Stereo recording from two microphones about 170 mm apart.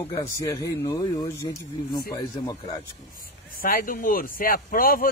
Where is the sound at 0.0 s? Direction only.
15° left (ahead or behind).